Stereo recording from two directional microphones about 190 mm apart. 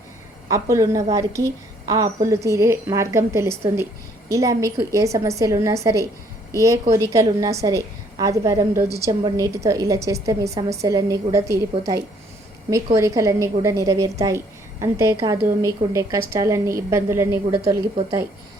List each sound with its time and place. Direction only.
0.5 s a woman's voice: 15° right (ahead or behind)